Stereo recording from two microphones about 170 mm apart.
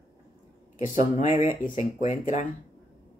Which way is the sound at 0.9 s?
45° left (ahead or behind).